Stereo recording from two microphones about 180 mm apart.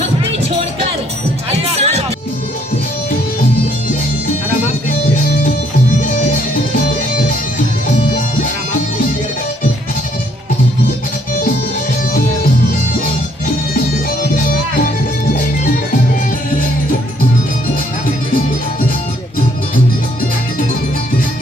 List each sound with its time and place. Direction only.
0.0 s music: 35° right (ahead or behind)
5.4 s music: 50° left (ahead or behind)
14.3 s music: 50° left (ahead or behind)